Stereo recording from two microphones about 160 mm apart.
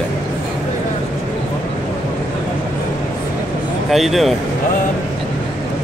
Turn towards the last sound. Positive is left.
turn(degrees=0)  # may be behind; listen again after turning